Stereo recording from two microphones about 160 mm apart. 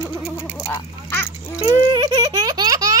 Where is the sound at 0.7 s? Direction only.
20° left (ahead or behind).